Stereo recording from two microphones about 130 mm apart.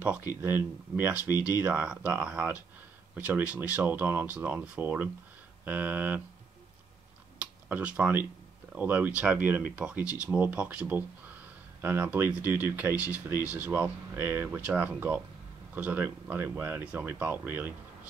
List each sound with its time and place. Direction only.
0.4 s speech: 15° right (ahead or behind)
7.3 s a sound: 10° right (ahead or behind)
8.7 s speech: 15° right (ahead or behind)